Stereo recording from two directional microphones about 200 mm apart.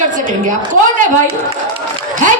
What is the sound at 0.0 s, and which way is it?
Speech, 40° right (ahead or behind).